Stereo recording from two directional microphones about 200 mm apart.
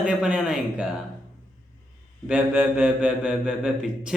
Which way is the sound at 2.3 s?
5° right (ahead or behind).